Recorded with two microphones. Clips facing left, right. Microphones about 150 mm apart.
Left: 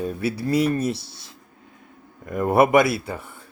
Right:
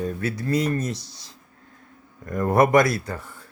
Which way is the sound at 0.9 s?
60° left (ahead or behind).